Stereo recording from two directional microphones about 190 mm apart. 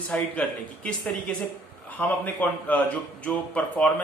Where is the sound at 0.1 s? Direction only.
5° left (ahead or behind).